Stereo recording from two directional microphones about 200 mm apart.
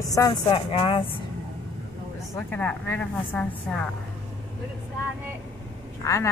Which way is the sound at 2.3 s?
10° left (ahead or behind).